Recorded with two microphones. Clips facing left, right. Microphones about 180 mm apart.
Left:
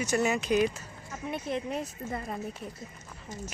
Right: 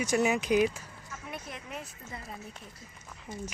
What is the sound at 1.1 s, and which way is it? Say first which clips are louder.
Speech: left 9 dB; 30° left (ahead or behind).